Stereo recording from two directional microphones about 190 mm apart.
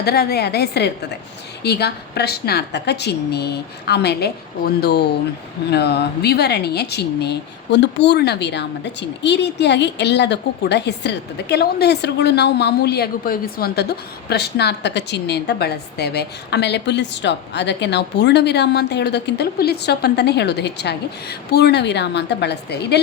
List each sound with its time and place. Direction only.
0.0 s speech: 55° left (ahead or behind)